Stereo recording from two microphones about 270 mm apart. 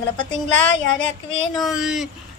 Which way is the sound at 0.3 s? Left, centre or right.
Left.